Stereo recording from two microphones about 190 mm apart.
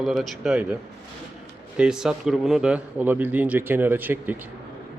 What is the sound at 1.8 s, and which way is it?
A man's voice, 5° right (ahead or behind).